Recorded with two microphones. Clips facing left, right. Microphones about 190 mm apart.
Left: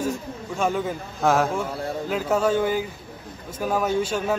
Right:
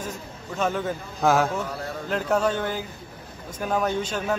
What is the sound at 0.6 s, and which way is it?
A man's voice, 10° left (ahead or behind).